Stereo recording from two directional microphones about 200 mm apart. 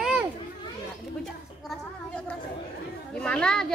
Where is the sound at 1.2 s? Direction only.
5° left (ahead or behind).